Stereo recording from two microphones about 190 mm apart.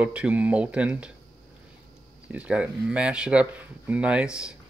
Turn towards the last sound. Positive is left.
turn(degrees=-5)  # may be behind; listen again after turning